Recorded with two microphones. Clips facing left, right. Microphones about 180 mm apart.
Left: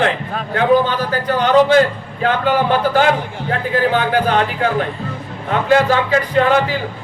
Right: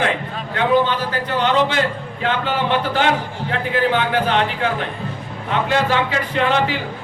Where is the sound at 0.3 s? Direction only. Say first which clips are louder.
Left 3 dB; 40° left (ahead or behind).